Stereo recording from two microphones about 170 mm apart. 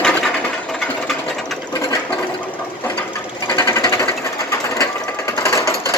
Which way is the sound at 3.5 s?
20° left (ahead or behind).